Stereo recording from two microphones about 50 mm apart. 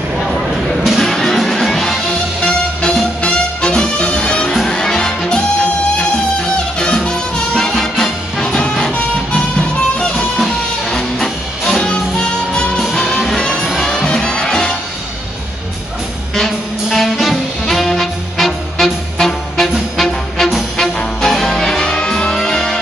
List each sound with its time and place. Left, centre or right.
1.0 s music: centre
6.8 s music: centre
11.1 s music: centre
13.7 s music: centre
14.0 s music: centre
16.3 s music: centre
20.7 s music: centre